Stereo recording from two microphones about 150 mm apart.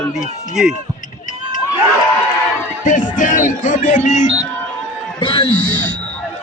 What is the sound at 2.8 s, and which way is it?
Speech, 60° left (ahead or behind).